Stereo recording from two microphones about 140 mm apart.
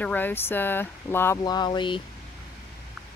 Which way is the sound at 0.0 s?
15° left (ahead or behind).